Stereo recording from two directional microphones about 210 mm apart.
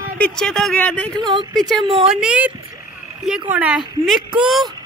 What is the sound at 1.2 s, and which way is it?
Speech, 20° right (ahead or behind).